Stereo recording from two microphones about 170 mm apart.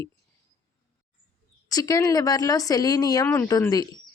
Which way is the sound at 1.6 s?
20° left (ahead or behind).